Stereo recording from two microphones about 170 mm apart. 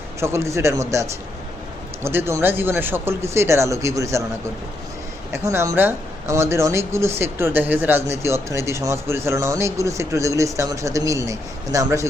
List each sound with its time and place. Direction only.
0.2 s speech: 15° right (ahead or behind)
5.3 s speech: 15° right (ahead or behind)